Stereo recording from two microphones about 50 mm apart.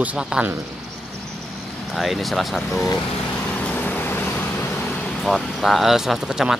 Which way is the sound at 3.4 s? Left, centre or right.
Left.